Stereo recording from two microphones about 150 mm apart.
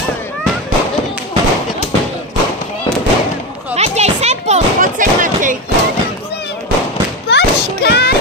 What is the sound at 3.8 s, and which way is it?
Children playing, 45° right (ahead or behind).